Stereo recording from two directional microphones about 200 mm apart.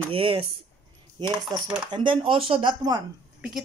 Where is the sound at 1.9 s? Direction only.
25° right (ahead or behind).